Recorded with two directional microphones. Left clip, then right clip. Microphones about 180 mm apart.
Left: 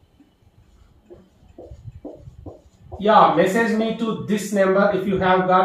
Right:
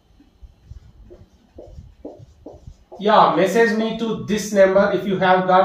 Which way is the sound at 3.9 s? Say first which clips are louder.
Right 1 dB; 10° left (ahead or behind).